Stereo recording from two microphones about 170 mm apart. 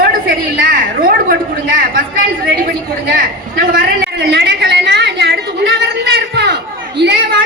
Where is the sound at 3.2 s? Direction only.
55° right (ahead or behind); by 6.6 s 85° right.